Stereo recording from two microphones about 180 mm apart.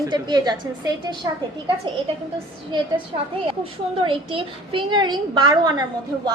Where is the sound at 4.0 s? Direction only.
30° right (ahead or behind).